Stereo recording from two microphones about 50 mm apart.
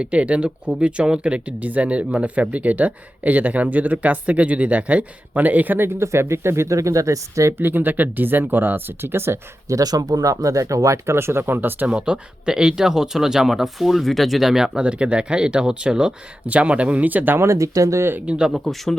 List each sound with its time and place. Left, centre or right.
0.0 s speech: right
6.0 s speech: right
7.6 s speech: right
9.7 s speech: right
11.9 s speech: right
17.3 s speech: right
18.3 s speech: centre
18.6 s speech: centre